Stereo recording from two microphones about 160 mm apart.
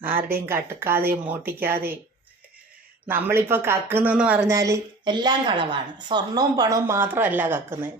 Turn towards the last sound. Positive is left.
turn(degrees=-15)  # may be behind; listen again after turning